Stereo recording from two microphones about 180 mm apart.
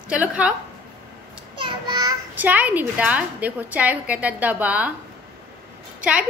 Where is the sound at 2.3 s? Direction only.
10° right (ahead or behind).